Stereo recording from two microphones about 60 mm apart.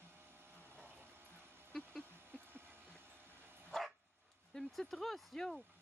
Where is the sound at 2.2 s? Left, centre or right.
Right.